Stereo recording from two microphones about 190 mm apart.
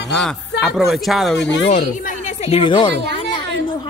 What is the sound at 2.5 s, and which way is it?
Speech, 25° left (ahead or behind).